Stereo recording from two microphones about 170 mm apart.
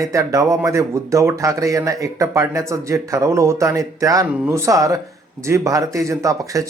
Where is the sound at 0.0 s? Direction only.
20° right (ahead or behind).